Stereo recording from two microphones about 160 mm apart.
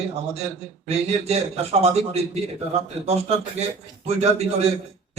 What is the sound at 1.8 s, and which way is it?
Speech, 40° right (ahead or behind).